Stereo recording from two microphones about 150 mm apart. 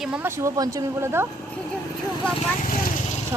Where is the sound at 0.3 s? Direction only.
20° right (ahead or behind).